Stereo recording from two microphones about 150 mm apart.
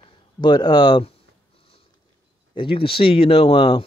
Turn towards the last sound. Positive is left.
turn(degrees=35)  # may be behind; listen again after turning